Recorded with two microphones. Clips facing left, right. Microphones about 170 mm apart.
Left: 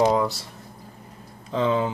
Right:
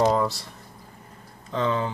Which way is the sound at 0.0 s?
5° left (ahead or behind).